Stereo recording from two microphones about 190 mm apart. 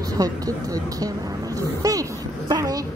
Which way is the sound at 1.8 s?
20° right (ahead or behind).